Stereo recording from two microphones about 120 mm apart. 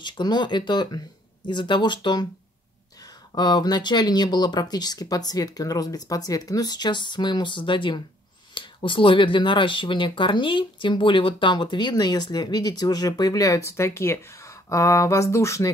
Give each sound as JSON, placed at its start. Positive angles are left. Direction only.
{"t": 0.0, "sound": "speech", "side_deg": 35}